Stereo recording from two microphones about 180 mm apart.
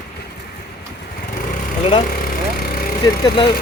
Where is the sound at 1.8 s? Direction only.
30° left (ahead or behind).